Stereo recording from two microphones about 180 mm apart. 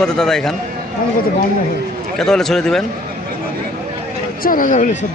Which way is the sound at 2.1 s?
Centre (ahead or behind).